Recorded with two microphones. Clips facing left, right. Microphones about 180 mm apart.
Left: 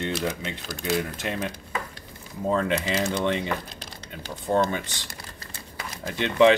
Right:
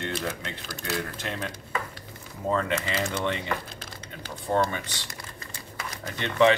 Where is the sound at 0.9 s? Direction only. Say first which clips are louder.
Left 4 dB; 15° left (ahead or behind).